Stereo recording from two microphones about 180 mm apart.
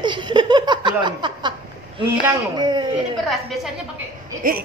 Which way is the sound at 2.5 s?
25° right (ahead or behind).